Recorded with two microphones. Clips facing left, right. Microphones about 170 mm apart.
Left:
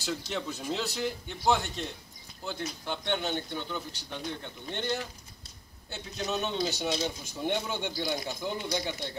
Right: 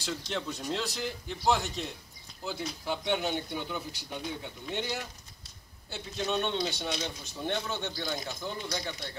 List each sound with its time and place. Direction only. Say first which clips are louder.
0.0 s a man's voice: left 1 dB; centre (ahead or behind); by 9.1 s 20° left (ahead or behind)